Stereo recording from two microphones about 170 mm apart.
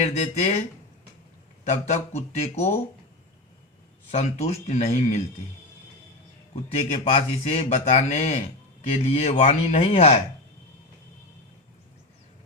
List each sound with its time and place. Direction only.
0.0 s speech: 40° left (ahead or behind)
1.6 s speech: 40° left (ahead or behind)
4.1 s speech: 40° left (ahead or behind)
6.9 s speech: 35° left (ahead or behind)